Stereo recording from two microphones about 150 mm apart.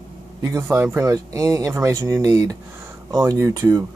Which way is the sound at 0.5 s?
15° right (ahead or behind).